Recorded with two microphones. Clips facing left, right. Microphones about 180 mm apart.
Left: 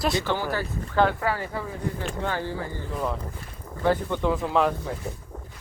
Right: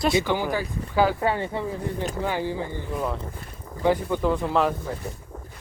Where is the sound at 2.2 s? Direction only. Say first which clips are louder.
Right 2 dB; 15° right (ahead or behind).